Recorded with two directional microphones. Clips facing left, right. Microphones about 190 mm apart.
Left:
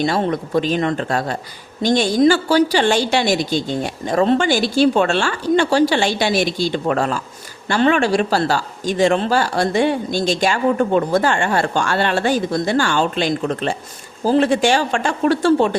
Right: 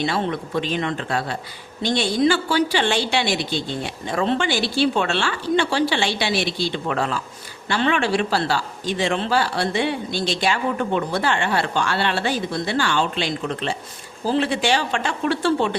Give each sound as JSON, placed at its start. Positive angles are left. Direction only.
{"t": 0.0, "sound": "a woman's voice", "side_deg": 40}